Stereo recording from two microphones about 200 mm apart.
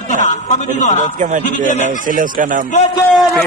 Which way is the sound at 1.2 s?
40° right (ahead or behind).